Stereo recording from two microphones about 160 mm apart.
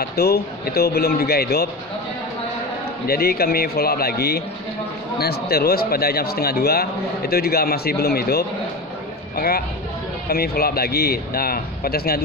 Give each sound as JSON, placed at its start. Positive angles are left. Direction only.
{"t": 0.0, "sound": "speech", "side_deg": 80}
{"t": 3.1, "sound": "speech", "side_deg": 75}
{"t": 10.2, "sound": "speech", "side_deg": 75}